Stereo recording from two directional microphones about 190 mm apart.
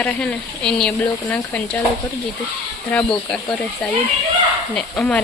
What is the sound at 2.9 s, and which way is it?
Speech, 5° left (ahead or behind).